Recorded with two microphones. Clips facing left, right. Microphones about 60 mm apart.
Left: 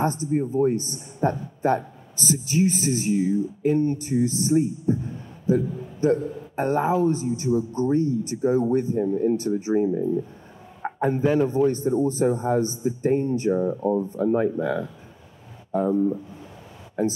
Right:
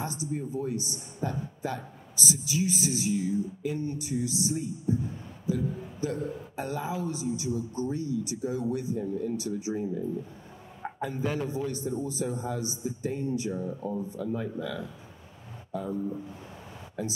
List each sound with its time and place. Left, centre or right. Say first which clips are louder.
0.0 s speech: left 10 dB; left